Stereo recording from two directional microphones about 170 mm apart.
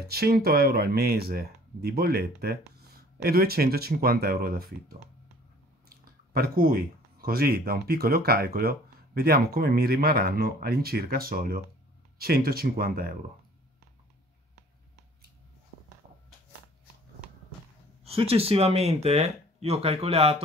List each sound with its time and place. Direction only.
0.0 s speech: 65° right (ahead or behind)
18.0 s speech: 35° right (ahead or behind)